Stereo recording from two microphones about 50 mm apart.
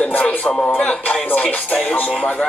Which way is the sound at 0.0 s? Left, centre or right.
Left.